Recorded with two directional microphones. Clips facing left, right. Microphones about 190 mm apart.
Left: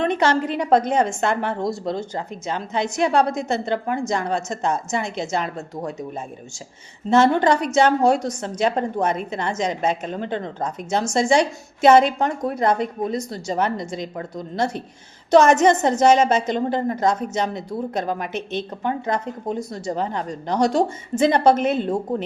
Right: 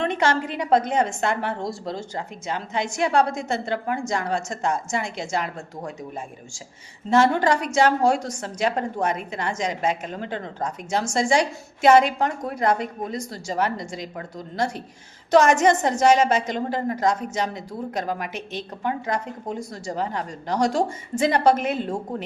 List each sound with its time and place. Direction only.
0.0 s a sound: 20° left (ahead or behind)
0.5 s a woman's voice: 20° right (ahead or behind)
1.9 s a woman's voice: 20° left (ahead or behind)